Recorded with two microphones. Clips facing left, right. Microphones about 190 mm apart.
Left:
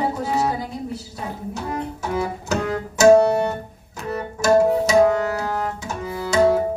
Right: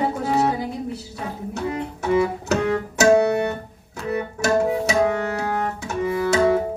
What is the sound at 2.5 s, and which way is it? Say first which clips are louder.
Music: right 2 dB; 60° right (ahead or behind).